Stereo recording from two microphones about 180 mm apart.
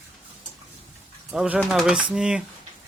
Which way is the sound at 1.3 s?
5° right (ahead or behind).